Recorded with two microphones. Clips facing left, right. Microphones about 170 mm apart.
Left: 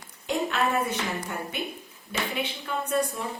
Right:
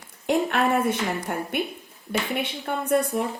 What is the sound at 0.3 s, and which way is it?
A woman's voice, 55° right (ahead or behind).